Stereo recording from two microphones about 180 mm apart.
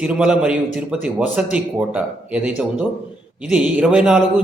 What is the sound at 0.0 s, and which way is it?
A man's voice, 5° right (ahead or behind).